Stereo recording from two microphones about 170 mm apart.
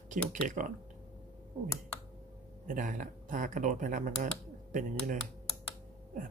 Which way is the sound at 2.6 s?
50° right (ahead or behind).